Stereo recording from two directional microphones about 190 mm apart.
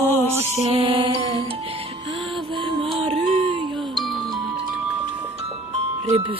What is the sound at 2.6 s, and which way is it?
Music, 25° right (ahead or behind).